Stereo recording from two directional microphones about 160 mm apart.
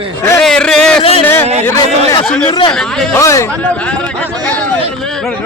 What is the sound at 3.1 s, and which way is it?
Speech, 20° left (ahead or behind).